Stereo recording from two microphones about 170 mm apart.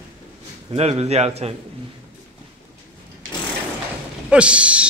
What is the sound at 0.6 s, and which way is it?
Speech, 35° right (ahead or behind).